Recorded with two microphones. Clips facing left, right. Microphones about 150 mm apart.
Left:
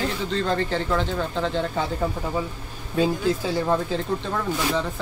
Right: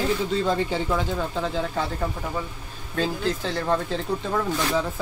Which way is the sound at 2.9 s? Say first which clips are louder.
Left 4 dB; 10° left (ahead or behind).